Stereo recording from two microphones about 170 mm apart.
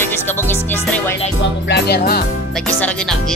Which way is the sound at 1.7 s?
75° left (ahead or behind).